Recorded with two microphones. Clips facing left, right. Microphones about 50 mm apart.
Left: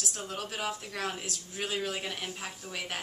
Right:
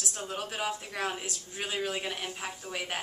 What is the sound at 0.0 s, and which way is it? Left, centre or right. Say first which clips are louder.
A woman's voice: right 1 dB; centre.